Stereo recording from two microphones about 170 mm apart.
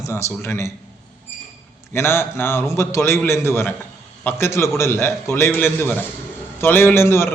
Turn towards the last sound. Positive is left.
turn(degrees=15)  # may be behind; listen again after turning